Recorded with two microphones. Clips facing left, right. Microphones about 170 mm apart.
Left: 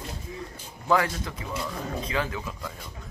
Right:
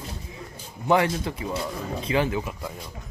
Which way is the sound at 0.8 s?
25° right (ahead or behind).